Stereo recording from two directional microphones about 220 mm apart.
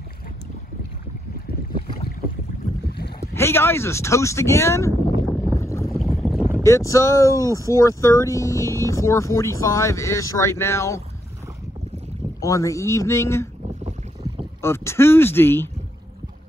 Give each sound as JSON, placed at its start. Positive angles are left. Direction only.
{"t": 3.3, "sound": "speech", "side_deg": 10}
{"t": 5.5, "sound": "boat", "side_deg": 15}
{"t": 5.9, "sound": "boat", "side_deg": 0}
{"t": 6.6, "sound": "speech", "side_deg": 15}
{"t": 12.4, "sound": "speech", "side_deg": 15}
{"t": 14.6, "sound": "speech", "side_deg": 10}